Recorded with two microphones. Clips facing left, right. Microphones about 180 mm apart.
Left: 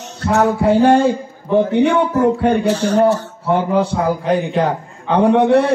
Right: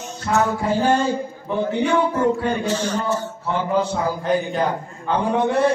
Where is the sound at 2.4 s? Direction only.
65° left (ahead or behind).